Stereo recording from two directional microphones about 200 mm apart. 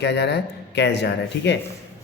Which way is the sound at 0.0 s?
55° left (ahead or behind).